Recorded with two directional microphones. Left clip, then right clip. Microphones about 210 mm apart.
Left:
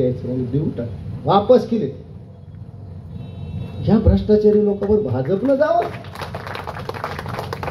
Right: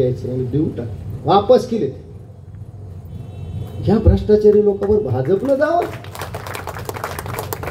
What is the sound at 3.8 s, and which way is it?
A man's voice, 55° right (ahead or behind).